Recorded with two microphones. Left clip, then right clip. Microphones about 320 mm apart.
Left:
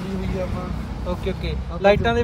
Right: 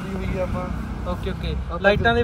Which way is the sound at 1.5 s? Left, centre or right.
Left.